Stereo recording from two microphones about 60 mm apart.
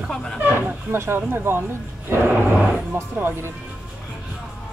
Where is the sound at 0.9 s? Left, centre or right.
Right.